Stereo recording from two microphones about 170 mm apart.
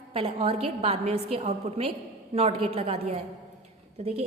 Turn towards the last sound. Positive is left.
turn(degrees=-40)  # may be behind; listen again after turning